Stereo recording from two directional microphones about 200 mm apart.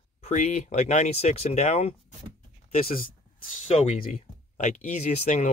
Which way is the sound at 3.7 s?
30° left (ahead or behind).